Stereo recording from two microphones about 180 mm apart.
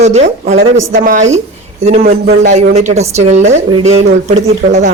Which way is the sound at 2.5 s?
40° right (ahead or behind).